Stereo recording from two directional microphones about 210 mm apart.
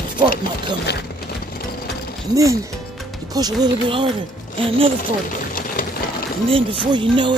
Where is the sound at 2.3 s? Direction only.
15° right (ahead or behind).